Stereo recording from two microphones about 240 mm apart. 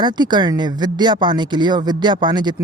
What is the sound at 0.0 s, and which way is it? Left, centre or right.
Speech, centre.